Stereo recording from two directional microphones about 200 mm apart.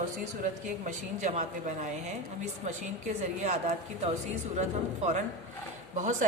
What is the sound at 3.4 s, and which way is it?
A woman's voice, 35° right (ahead or behind).